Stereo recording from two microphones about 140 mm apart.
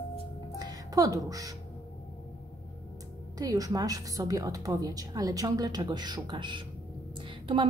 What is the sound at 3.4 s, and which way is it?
A woman's voice, 25° right (ahead or behind).